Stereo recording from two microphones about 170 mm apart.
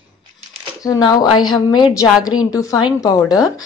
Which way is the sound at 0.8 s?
20° left (ahead or behind).